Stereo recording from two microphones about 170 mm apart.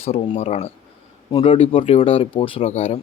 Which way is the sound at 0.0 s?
40° left (ahead or behind).